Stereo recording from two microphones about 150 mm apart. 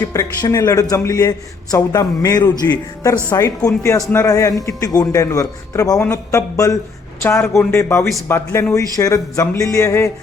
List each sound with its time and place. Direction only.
0.1 s a man's voice: 20° left (ahead or behind)